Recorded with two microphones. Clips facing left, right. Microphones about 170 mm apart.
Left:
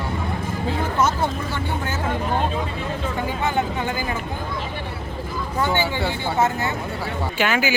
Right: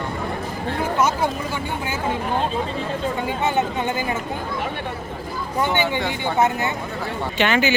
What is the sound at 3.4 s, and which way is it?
Speech, 20° right (ahead or behind).